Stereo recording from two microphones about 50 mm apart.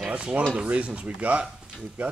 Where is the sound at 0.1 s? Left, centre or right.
Right.